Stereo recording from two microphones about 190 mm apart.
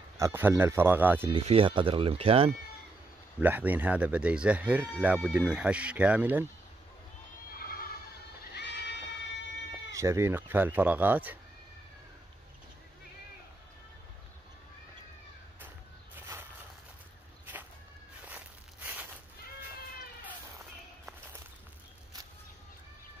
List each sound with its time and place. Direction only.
0.2 s speech: 10° right (ahead or behind)
1.3 s speech: 30° right (ahead or behind)
3.3 s speech: 10° right (ahead or behind)
8.5 s goat: 65° left (ahead or behind)
9.9 s speech: 15° right (ahead or behind)